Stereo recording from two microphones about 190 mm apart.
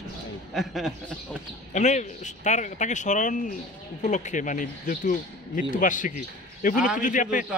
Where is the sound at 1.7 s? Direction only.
40° left (ahead or behind).